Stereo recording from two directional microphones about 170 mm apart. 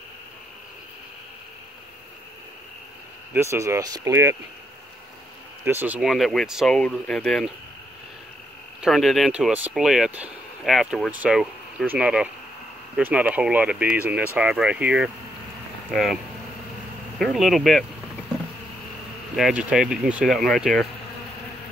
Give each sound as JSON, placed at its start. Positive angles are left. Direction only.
{"t": 3.3, "sound": "speech", "side_deg": -15}
{"t": 5.6, "sound": "speech", "side_deg": -15}
{"t": 5.9, "sound": "speech", "side_deg": 0}
{"t": 8.8, "sound": "speech", "side_deg": 0}
{"t": 17.2, "sound": "speech", "side_deg": 0}
{"t": 19.3, "sound": "speech", "side_deg": -5}